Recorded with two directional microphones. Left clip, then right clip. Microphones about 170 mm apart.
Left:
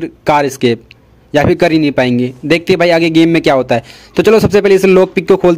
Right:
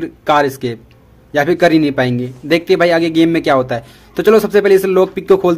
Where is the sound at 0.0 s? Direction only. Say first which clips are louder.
Left 1 dB; 45° left (ahead or behind).